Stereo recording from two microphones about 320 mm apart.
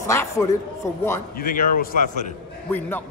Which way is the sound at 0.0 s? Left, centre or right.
Centre.